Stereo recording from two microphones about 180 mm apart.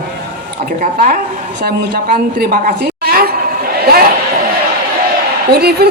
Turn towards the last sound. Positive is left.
turn(degrees=-60)  # may be behind; listen again after turning